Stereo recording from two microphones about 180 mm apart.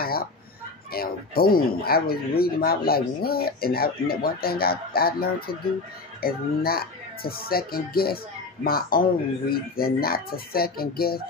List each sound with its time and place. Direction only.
0.0 s fowl: 55° left (ahead or behind)
0.9 s speech: 55° left (ahead or behind)